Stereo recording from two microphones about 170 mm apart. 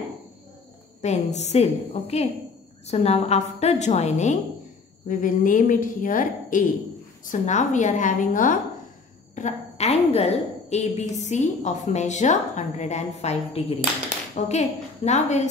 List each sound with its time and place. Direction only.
1.0 s a woman's voice: 40° left (ahead or behind)